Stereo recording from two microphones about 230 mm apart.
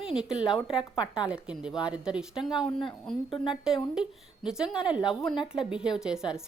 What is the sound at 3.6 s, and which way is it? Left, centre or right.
A woman's voice, centre.